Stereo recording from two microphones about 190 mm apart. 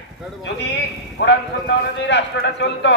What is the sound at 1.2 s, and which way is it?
A man's voice, 65° left (ahead or behind).